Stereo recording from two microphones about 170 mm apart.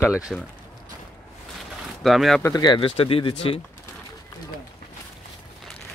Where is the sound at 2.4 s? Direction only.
25° left (ahead or behind).